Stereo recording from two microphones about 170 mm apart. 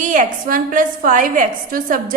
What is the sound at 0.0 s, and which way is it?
A woman's voice, 50° right (ahead or behind).